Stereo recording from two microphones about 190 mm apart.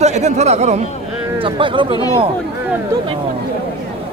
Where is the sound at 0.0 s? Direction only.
35° right (ahead or behind).